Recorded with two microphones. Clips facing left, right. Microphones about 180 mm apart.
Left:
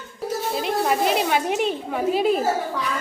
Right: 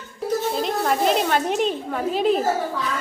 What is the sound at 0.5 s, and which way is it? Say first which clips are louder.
A woman's voice: even; 5° left (ahead or behind).